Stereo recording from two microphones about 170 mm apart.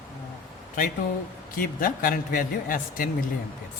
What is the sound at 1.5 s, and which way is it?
A man's voice, 55° left (ahead or behind).